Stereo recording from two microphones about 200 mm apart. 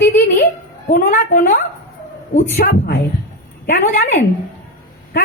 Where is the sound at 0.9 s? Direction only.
45° left (ahead or behind).